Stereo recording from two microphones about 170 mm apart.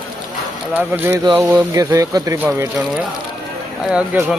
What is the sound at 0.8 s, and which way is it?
Speech, 10° right (ahead or behind).